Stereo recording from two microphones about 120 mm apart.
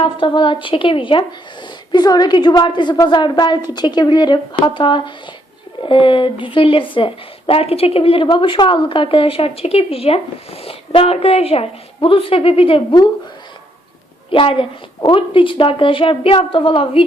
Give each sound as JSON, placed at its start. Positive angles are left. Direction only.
{"t": 0.0, "sound": "speech", "side_deg": 45}
{"t": 1.9, "sound": "a woman's voice", "side_deg": 35}
{"t": 14.3, "sound": "speech", "side_deg": 45}